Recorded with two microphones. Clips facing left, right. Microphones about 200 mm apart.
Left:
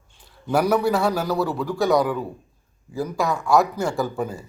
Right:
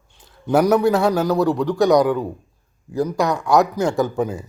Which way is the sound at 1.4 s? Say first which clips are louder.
Right 6 dB; 5° left (ahead or behind).